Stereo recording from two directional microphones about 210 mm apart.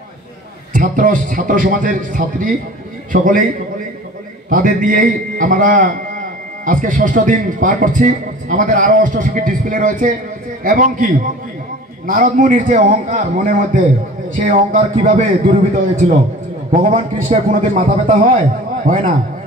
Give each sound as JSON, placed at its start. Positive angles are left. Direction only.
{"t": 0.7, "sound": "a man's voice", "side_deg": -40}
{"t": 4.5, "sound": "a man's voice", "side_deg": -40}
{"t": 16.8, "sound": "a man's voice", "side_deg": -35}